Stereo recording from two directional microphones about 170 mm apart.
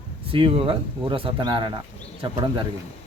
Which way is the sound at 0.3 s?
30° right (ahead or behind).